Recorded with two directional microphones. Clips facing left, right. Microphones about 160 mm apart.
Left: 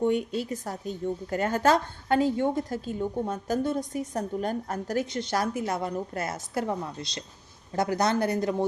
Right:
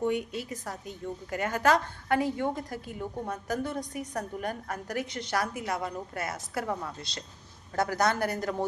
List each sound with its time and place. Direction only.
0.0 s a woman's voice: 30° left (ahead or behind)